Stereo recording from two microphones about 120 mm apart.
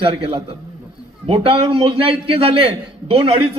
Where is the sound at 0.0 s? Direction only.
50° right (ahead or behind).